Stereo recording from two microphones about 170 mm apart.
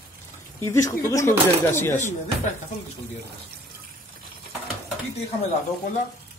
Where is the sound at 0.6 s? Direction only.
15° left (ahead or behind).